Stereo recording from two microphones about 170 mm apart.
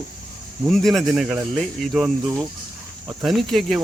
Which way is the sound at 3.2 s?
Centre (ahead or behind).